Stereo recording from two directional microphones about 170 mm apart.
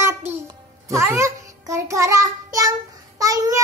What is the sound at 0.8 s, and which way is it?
Music, 15° right (ahead or behind).